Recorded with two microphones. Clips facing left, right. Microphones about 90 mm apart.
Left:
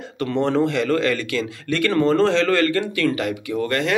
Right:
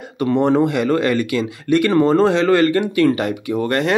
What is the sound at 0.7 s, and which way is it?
Speech, 20° right (ahead or behind).